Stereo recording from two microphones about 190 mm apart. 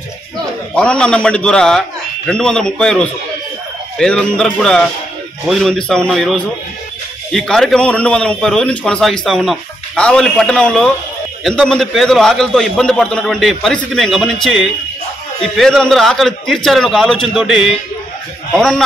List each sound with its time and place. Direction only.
0.7 s a man's voice: 5° left (ahead or behind)